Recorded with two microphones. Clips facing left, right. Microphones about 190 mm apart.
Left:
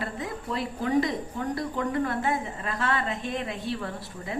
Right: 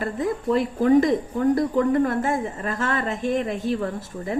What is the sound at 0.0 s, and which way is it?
Speech, 45° right (ahead or behind).